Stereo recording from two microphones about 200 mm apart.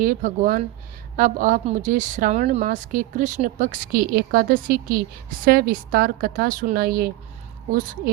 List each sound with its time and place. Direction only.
0.0 s a woman's voice: 40° right (ahead or behind)